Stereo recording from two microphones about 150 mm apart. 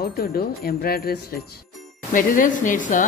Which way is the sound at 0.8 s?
90° left.